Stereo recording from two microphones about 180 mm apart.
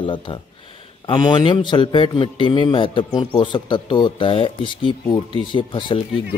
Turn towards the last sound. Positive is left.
turn(degrees=25)  # may be behind; listen again after turning